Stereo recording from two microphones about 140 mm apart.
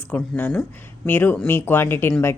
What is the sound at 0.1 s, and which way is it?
Speech, 10° left (ahead or behind).